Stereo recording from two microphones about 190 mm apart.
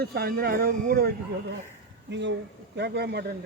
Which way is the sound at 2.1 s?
70° right (ahead or behind).